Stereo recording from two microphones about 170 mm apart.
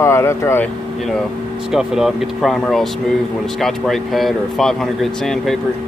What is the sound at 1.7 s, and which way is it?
Speech, 5° right (ahead or behind).